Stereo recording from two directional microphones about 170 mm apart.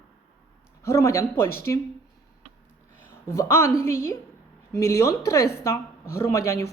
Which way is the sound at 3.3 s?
15° left (ahead or behind).